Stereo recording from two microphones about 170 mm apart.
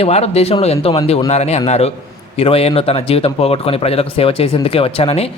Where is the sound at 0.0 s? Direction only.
40° left (ahead or behind).